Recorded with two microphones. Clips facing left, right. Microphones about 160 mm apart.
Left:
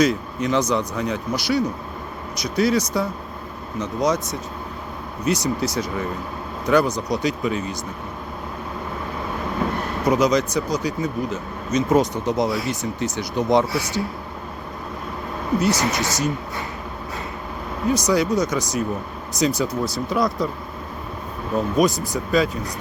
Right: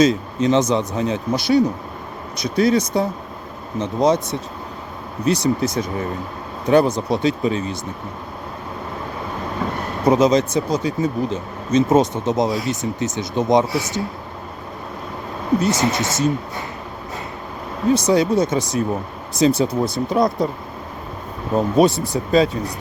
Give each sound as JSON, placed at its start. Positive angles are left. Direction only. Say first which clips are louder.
{"t": 0.0, "sound": "speech", "louder": "right 4 dB", "side_deg": -25}
{"t": 10.1, "sound": "speech", "louder": "right 4 dB", "side_deg": -25}
{"t": 15.6, "sound": "speech", "louder": "right 2 dB", "side_deg": -25}
{"t": 17.9, "sound": "speech", "louder": "right 3 dB", "side_deg": -25}
{"t": 19.6, "sound": "speech", "louder": "right 4 dB", "side_deg": -55}
{"t": 20.1, "sound": "speech", "louder": "right 3 dB", "side_deg": -25}
{"t": 21.5, "sound": "speech", "louder": "right 4 dB", "side_deg": -30}